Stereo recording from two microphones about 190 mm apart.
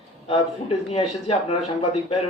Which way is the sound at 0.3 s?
35° left (ahead or behind).